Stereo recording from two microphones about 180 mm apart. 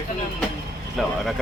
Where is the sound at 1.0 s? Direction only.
Centre (ahead or behind).